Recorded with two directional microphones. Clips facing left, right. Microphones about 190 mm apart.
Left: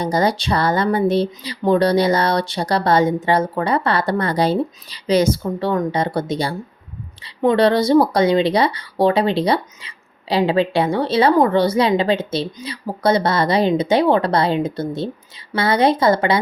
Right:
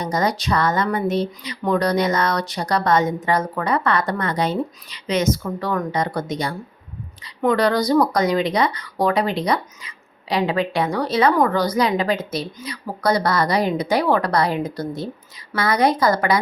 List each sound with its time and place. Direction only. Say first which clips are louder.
0.0 s speech: left 3 dB; 30° left (ahead or behind)